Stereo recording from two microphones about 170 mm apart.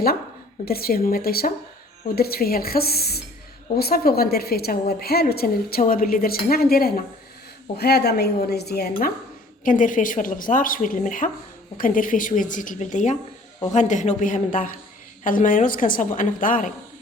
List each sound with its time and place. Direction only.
0.6 s a woman's voice: 65° left (ahead or behind)
9.6 s a woman's voice: 50° left (ahead or behind)